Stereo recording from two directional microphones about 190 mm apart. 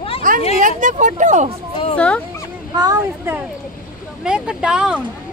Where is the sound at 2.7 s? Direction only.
20° right (ahead or behind).